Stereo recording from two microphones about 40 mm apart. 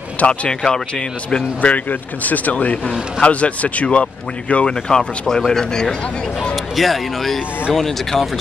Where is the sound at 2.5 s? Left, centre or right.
Left.